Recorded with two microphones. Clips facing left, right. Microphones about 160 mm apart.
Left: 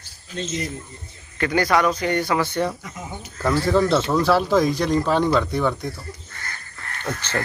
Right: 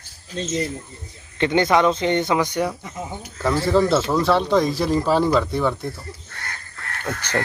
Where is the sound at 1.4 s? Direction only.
20° right (ahead or behind).